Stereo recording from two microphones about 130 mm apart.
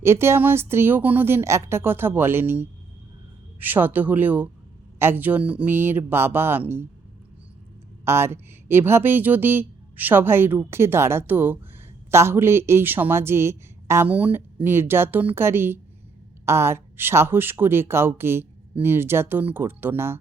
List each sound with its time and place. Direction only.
0.0 s speech: 20° right (ahead or behind)
8.0 s speech: 20° right (ahead or behind)